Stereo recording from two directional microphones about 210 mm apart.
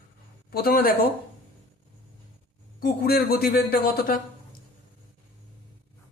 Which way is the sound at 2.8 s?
50° left (ahead or behind).